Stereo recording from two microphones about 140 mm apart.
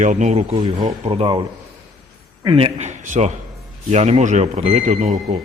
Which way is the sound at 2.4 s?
35° right (ahead or behind).